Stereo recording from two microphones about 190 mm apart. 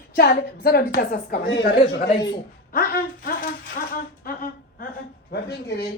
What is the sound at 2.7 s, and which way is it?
Speech, 50° left (ahead or behind).